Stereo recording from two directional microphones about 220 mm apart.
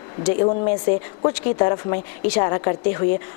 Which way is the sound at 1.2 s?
25° left (ahead or behind).